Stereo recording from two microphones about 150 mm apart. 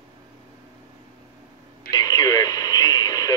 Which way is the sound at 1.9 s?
25° left (ahead or behind).